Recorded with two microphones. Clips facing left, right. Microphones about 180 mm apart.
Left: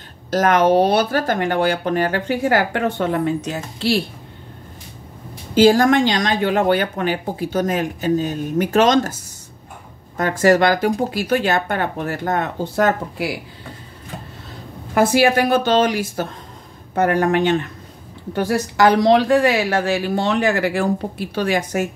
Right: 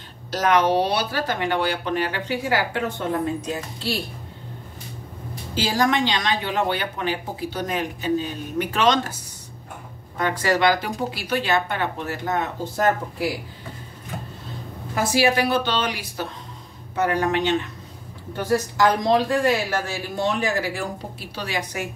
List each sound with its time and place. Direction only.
0.3 s speech: 50° left (ahead or behind); by 4.0 s 75° left (ahead or behind)
5.5 s speech: 50° left (ahead or behind)
10.1 s speech: 45° left (ahead or behind)
15.0 s speech: 55° left (ahead or behind)
18.3 s a woman's voice: 70° left (ahead or behind); by 21.8 s 50° left (ahead or behind)